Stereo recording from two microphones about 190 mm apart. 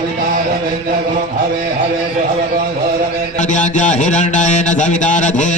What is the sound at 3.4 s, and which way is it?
Mantra, 40° left (ahead or behind).